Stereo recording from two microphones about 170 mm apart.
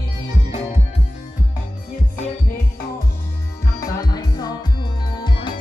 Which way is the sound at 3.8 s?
25° left (ahead or behind).